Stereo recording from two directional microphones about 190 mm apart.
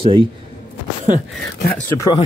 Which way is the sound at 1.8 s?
20° left (ahead or behind).